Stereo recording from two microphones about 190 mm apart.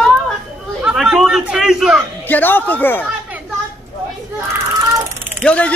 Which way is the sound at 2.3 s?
10° left (ahead or behind).